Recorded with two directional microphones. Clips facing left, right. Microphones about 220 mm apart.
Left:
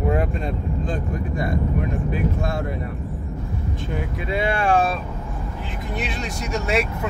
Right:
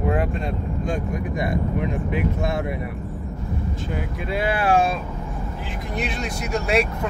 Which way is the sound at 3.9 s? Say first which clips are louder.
Left 2 dB; 5° right (ahead or behind).